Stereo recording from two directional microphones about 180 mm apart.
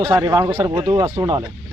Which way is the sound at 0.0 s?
15° right (ahead or behind).